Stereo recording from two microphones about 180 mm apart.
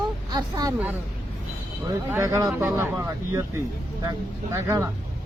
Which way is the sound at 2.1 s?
20° right (ahead or behind).